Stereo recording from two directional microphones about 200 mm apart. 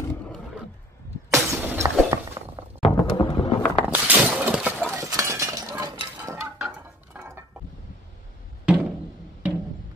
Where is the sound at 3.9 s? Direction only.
10° right (ahead or behind).